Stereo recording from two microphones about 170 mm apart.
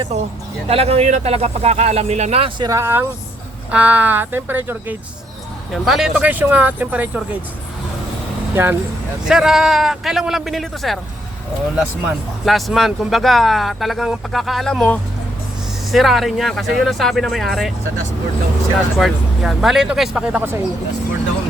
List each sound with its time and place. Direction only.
0.7 s speech: 35° right (ahead or behind)
2.6 s speech: 15° right (ahead or behind)
8.6 s speech: 15° right (ahead or behind)
18.9 s speech: centre (ahead or behind)